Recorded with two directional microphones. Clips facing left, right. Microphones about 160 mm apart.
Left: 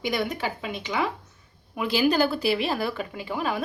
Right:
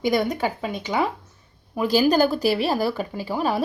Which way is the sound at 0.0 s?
45° right (ahead or behind).